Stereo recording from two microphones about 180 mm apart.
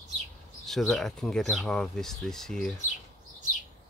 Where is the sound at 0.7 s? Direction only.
Centre (ahead or behind).